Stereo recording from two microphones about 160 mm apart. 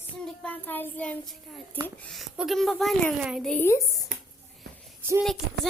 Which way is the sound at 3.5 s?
15° left (ahead or behind).